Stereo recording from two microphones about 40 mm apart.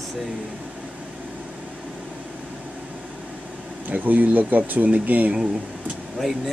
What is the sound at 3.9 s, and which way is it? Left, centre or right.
Speech, right.